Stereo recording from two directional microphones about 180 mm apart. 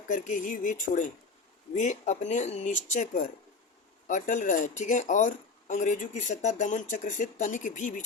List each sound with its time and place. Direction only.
0.1 s speech: 50° left (ahead or behind)